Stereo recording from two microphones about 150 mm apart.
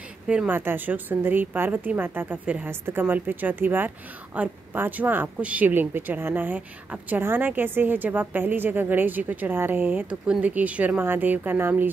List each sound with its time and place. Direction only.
0.3 s a woman's voice: 10° right (ahead or behind)